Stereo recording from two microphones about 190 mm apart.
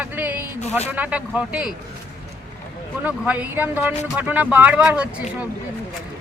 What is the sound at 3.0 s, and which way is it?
Speech, 10° right (ahead or behind).